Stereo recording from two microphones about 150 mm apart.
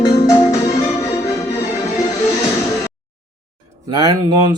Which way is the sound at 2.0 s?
20° left (ahead or behind).